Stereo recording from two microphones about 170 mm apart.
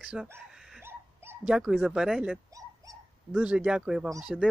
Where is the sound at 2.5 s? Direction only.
20° right (ahead or behind).